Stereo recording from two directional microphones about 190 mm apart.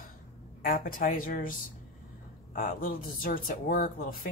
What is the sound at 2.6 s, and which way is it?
Speech, 45° left (ahead or behind).